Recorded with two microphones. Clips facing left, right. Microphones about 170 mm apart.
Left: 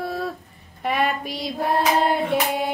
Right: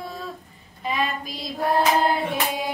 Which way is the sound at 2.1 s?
60° left (ahead or behind).